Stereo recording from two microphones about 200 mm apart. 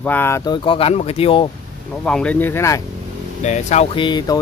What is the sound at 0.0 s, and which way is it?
Speech, 10° left (ahead or behind).